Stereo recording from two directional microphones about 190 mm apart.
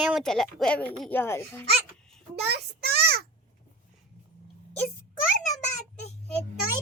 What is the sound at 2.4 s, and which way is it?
Speech, 60° right (ahead or behind).